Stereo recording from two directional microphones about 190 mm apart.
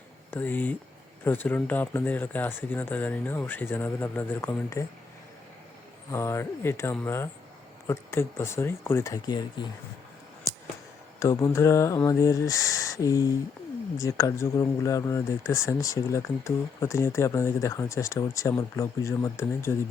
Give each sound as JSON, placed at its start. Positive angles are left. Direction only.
{"t": 0.3, "sound": "speech", "side_deg": 10}
{"t": 6.1, "sound": "speech", "side_deg": 15}
{"t": 11.2, "sound": "speech", "side_deg": 15}